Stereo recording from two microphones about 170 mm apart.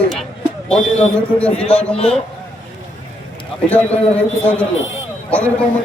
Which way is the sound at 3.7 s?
10° left (ahead or behind).